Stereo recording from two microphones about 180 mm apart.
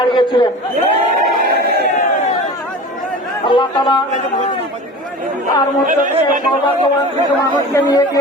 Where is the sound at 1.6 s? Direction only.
65° right (ahead or behind).